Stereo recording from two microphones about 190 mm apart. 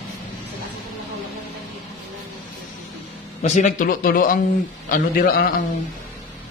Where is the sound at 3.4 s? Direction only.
40° left (ahead or behind).